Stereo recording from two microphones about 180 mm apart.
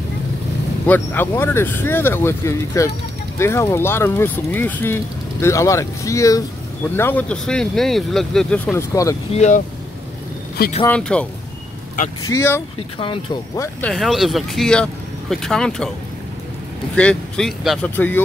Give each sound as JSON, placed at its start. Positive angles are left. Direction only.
{"t": 0.8, "sound": "speech", "side_deg": 10}
{"t": 8.7, "sound": "speech", "side_deg": 15}
{"t": 9.3, "sound": "speech", "side_deg": 40}
{"t": 10.9, "sound": "speech", "side_deg": 5}
{"t": 12.3, "sound": "speech", "side_deg": 15}
{"t": 13.9, "sound": "speech", "side_deg": 0}
{"t": 16.9, "sound": "speech", "side_deg": 5}